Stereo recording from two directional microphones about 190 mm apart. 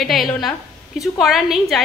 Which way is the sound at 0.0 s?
Centre (ahead or behind).